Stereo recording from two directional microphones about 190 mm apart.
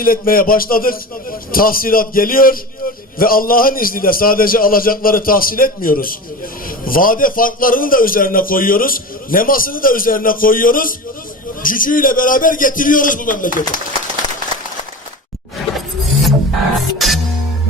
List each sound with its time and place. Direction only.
0.0 s a man's voice: 50° left (ahead or behind)
16.8 s music: centre (ahead or behind)